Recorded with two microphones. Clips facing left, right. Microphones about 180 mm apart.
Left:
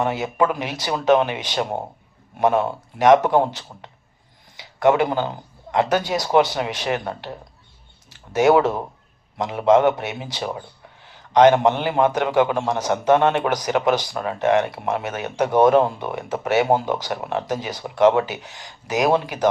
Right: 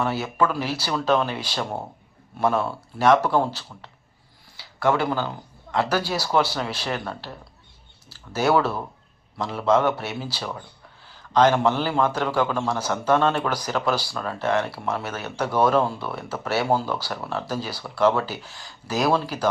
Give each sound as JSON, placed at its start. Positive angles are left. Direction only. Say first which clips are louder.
{"t": 0.0, "sound": "speech", "louder": "left 3 dB", "side_deg": 20}
{"t": 4.5, "sound": "a sound", "louder": "left 5 dB", "side_deg": 20}
{"t": 5.7, "sound": "speech", "louder": "left 4 dB", "side_deg": 20}